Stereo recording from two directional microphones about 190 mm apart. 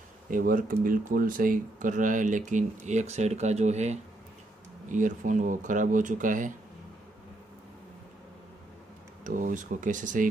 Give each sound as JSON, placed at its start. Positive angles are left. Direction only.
{"t": 0.3, "sound": "speech", "side_deg": -45}
{"t": 9.2, "sound": "speech", "side_deg": -45}